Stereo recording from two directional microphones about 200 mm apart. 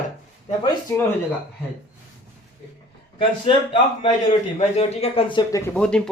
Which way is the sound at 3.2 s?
25° left (ahead or behind).